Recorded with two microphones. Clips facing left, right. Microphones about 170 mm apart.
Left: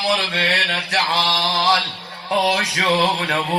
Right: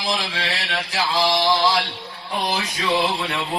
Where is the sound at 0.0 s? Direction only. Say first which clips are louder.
Left 4 dB; 65° left (ahead or behind).